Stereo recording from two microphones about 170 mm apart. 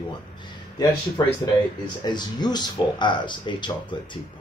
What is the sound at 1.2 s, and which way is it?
Speech, 20° left (ahead or behind).